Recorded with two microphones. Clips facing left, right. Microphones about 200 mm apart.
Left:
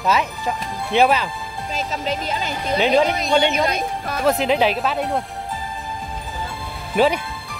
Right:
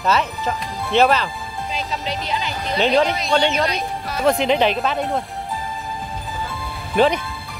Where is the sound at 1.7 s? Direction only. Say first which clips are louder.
Left 3 dB; 45° left (ahead or behind).